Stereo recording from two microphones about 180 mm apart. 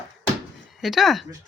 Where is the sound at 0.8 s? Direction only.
Centre (ahead or behind).